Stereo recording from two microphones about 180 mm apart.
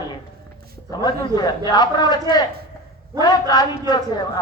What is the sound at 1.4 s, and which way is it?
Speech, 25° left (ahead or behind).